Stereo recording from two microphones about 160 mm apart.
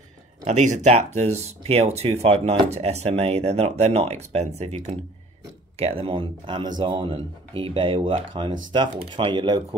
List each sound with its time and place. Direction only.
0.5 s speech: 45° right (ahead or behind); by 9.8 s 30° right (ahead or behind)